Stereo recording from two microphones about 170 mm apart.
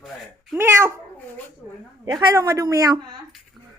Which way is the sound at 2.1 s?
20° right (ahead or behind).